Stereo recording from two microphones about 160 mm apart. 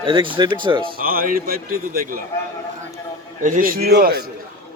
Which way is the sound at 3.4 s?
60° right (ahead or behind).